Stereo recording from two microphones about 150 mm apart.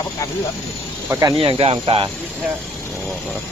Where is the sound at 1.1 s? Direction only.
25° right (ahead or behind).